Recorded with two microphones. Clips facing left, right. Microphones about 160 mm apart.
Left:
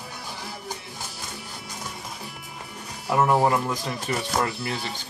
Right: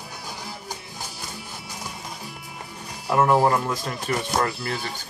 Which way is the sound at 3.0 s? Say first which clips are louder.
Right 2 dB; 5° left (ahead or behind).